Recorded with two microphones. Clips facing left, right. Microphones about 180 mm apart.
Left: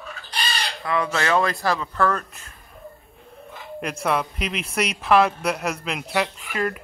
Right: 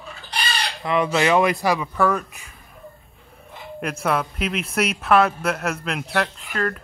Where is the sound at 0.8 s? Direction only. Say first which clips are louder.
Right 4 dB; 20° right (ahead or behind).